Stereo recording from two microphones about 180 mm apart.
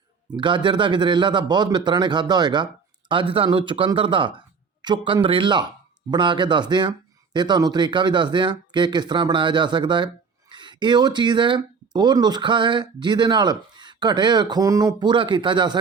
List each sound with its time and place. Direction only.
0.3 s speech: 25° right (ahead or behind)